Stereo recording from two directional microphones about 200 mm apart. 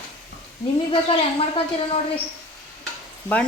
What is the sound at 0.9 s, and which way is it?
Speech, 25° left (ahead or behind).